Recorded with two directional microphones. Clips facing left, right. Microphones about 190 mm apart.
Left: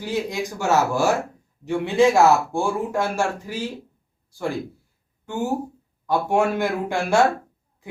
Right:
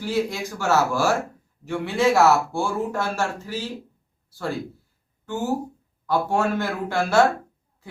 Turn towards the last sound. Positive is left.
turn(degrees=15)  # may be behind; listen again after turning